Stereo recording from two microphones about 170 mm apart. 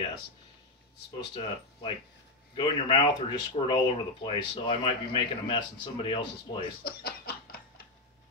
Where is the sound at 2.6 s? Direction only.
30° left (ahead or behind).